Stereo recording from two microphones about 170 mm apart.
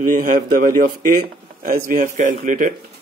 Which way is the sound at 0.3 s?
50° right (ahead or behind).